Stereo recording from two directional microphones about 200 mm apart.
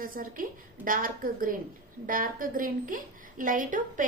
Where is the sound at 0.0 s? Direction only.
45° right (ahead or behind).